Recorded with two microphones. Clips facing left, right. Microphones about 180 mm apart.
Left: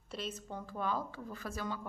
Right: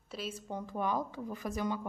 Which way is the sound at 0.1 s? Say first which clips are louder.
Right 1 dB; 5° right (ahead or behind).